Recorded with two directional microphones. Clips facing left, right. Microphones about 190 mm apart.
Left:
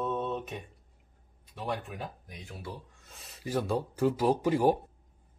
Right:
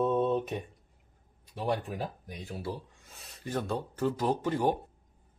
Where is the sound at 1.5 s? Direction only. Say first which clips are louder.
Right 4 dB; 35° right (ahead or behind).